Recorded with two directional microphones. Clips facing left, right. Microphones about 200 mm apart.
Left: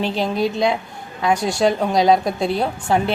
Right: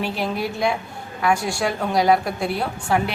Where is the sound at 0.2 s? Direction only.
20° left (ahead or behind).